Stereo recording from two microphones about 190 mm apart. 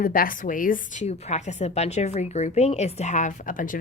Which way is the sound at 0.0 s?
50° left (ahead or behind).